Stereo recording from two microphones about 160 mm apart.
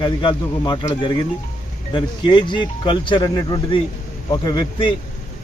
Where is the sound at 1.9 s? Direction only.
30° left (ahead or behind).